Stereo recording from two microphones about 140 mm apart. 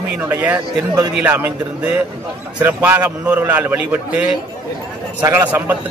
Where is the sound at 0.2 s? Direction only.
15° right (ahead or behind).